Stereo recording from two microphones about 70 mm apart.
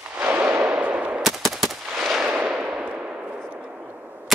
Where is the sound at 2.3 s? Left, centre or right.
Centre.